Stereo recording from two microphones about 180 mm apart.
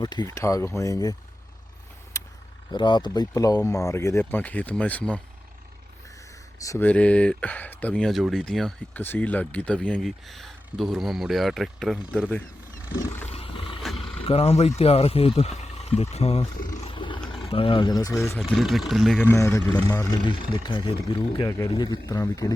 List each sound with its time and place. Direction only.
0.0 s speech: 20° left (ahead or behind)
2.1 s vehicle: 15° left (ahead or behind)
2.7 s speech: 25° left (ahead or behind); by 5.2 s 10° left (ahead or behind)
6.6 s speech: 15° left (ahead or behind)
13.2 s roar: 30° left (ahead or behind)
14.2 s speech: 35° left (ahead or behind)
16.8 s roar: 30° left (ahead or behind)
17.3 s speech: 30° left (ahead or behind); by 18.6 s 10° left (ahead or behind)
18.6 s speech: centre (ahead or behind)
19.2 s speech: 15° left (ahead or behind)
20.5 s speech: 25° left (ahead or behind)